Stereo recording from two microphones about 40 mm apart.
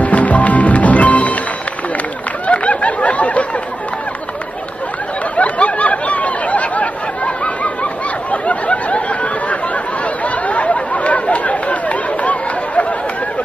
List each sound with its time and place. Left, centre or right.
0.0 s music: left
2.4 s a sound: left
5.3 s snicker: left
10.2 s chatter: left